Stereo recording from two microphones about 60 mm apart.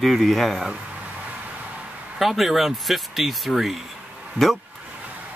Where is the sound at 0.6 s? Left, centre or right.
Right.